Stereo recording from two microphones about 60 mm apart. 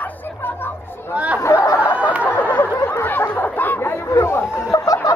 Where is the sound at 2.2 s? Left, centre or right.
Left.